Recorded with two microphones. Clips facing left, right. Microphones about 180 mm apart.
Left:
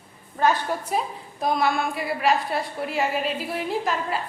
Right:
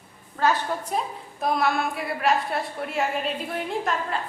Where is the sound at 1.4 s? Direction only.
Centre (ahead or behind).